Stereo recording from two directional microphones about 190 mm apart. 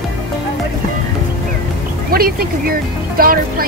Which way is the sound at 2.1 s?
50° right (ahead or behind).